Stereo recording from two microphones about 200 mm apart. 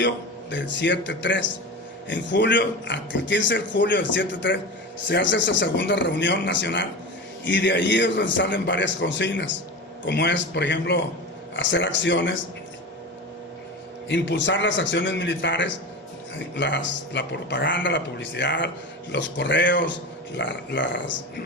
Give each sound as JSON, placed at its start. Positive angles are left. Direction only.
{"t": 0.5, "sound": "a man's voice", "side_deg": 65}
{"t": 14.1, "sound": "a man's voice", "side_deg": 65}